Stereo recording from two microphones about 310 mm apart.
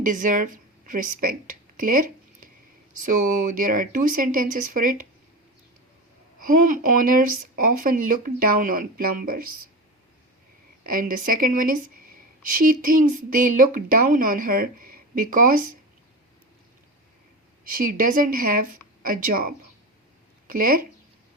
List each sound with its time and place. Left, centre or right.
0.0 s a woman's voice: right
6.4 s speech: right
10.8 s speech: right
17.7 s speech: right